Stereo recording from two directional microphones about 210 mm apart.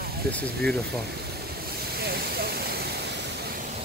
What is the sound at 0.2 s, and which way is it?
Speech, 45° right (ahead or behind).